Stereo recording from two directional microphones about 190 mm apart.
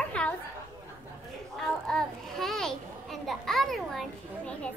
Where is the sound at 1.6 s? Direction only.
5° left (ahead or behind).